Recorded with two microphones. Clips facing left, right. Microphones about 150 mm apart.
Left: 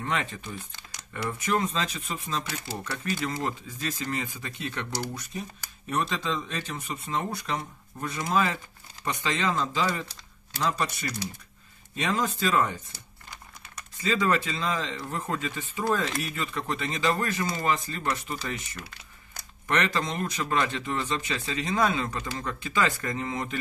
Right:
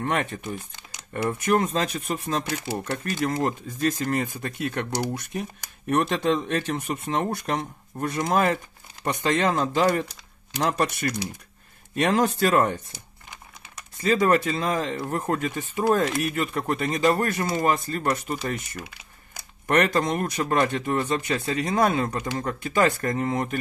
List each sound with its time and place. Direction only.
0.0 s speech: 55° right (ahead or behind)
5.2 s speech: 60° right (ahead or behind)
12.9 s crumpling: 20° right (ahead or behind)
13.9 s speech: 50° right (ahead or behind)